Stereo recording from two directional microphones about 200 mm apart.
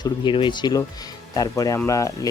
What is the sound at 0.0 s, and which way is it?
Speech, 25° left (ahead or behind).